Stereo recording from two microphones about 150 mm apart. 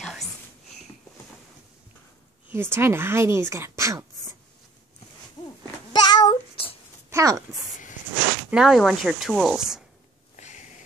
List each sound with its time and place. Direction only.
0.0 s whispering: centre (ahead or behind)
2.5 s speech: 15° right (ahead or behind)
5.9 s child singing: 25° left (ahead or behind)
7.1 s speech: 20° right (ahead or behind)
8.5 s speech: 5° right (ahead or behind)
10.3 s a sound: 55° left (ahead or behind)